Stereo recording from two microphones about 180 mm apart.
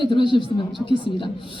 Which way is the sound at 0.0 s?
25° left (ahead or behind).